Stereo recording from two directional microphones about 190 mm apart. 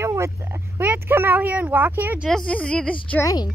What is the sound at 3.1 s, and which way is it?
Speech, 15° left (ahead or behind).